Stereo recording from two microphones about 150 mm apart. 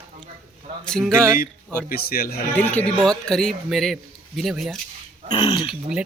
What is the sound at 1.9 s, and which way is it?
Speech, 90° left.